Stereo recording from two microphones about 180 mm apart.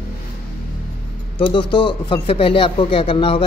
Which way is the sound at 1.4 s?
30° left (ahead or behind).